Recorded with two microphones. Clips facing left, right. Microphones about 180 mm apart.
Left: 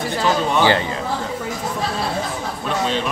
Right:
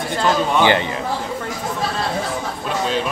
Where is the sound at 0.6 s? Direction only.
20° right (ahead or behind).